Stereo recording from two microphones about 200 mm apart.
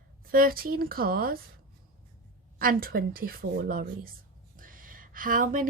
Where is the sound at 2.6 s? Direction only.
45° right (ahead or behind).